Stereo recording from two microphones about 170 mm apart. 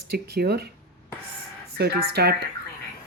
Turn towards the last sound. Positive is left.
turn(degrees=-70)  # may be behind; listen again after turning